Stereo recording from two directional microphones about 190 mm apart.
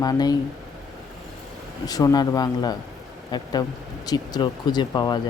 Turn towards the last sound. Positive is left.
turn(degrees=25)  # may be behind; listen again after turning